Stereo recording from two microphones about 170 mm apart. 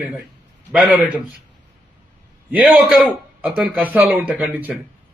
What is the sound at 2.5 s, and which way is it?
A man's voice, 5° right (ahead or behind).